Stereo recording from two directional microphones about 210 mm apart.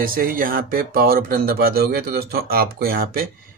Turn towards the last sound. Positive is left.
turn(degrees=-45)  # may be behind; listen again after turning